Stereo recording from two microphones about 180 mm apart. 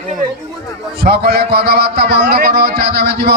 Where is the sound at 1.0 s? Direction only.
60° right (ahead or behind).